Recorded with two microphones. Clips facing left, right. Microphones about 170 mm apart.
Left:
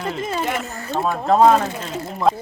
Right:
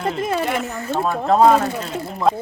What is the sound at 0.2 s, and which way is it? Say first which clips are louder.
Speech: right 3 dB; 60° right (ahead or behind).